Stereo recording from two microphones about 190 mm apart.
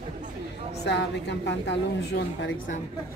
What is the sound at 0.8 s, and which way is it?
A woman's voice, 65° left (ahead or behind).